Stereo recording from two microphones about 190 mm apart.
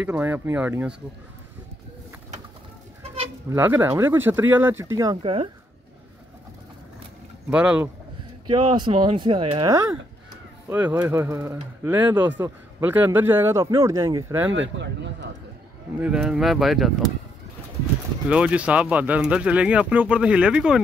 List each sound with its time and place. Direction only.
0.0 s speech: 10° right (ahead or behind)
3.4 s speech: 10° right (ahead or behind)
5.2 s speech: 30° right (ahead or behind)
7.5 s speech: 5° right (ahead or behind)
8.5 s speech: 25° right (ahead or behind)
14.5 s speech: 70° right (ahead or behind)
16.0 s speech: 5° right (ahead or behind)
18.3 s speech: 5° right (ahead or behind)